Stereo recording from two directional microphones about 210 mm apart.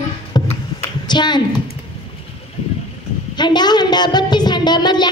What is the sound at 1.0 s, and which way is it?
Speech, 20° left (ahead or behind).